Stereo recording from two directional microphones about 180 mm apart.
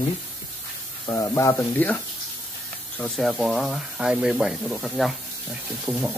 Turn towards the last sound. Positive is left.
turn(degrees=-5)  # may be behind; listen again after turning